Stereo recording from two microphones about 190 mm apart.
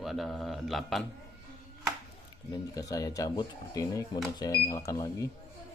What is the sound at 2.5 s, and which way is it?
Speech, 20° left (ahead or behind).